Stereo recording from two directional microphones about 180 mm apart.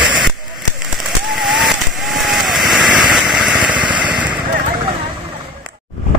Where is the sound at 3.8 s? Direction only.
25° right (ahead or behind).